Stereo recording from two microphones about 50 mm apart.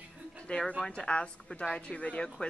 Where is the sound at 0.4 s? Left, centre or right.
Left.